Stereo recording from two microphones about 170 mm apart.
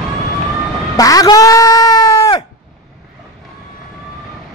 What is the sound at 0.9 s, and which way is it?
Bleat, 20° left (ahead or behind).